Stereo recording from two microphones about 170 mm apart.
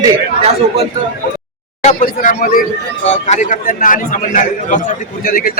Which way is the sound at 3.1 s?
45° left (ahead or behind).